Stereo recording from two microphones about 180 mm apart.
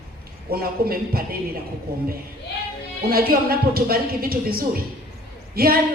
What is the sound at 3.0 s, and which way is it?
Speech, 55° right (ahead or behind).